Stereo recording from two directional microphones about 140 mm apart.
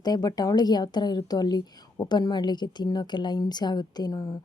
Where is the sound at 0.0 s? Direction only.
30° left (ahead or behind).